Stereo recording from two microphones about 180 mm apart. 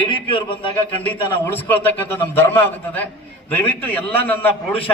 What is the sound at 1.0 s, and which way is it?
A man's voice, 10° left (ahead or behind).